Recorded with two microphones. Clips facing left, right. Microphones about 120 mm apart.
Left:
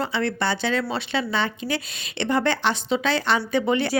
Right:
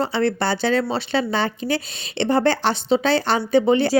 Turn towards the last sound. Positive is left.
turn(degrees=-30)  # may be behind; listen again after turning